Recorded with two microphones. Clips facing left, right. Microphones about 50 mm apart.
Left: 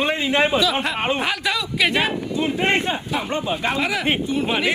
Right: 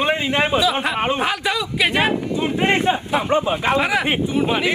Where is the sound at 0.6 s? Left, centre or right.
Centre.